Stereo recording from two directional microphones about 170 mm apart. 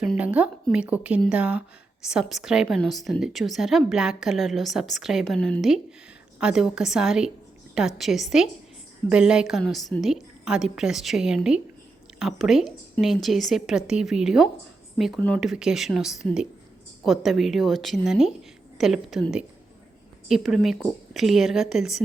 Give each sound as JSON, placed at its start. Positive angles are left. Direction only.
{"t": 0.0, "sound": "a woman's voice", "side_deg": -5}